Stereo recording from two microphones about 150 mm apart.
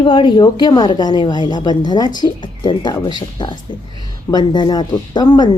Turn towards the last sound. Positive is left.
turn(degrees=30)  # may be behind; listen again after turning